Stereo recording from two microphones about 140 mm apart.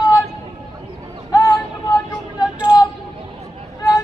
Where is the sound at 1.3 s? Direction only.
25° left (ahead or behind).